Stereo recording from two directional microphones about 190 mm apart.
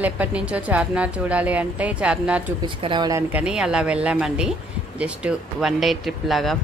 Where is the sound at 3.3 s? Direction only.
5° right (ahead or behind).